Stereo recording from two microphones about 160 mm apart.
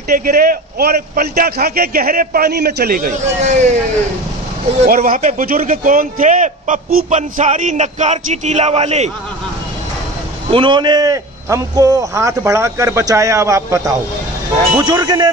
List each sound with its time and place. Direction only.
0.1 s a man's voice: 65° right (ahead or behind); by 3.7 s 45° right (ahead or behind)
4.8 s a man's voice: 60° right (ahead or behind); by 9.1 s 40° right (ahead or behind)
10.5 s a man's voice: 30° right (ahead or behind)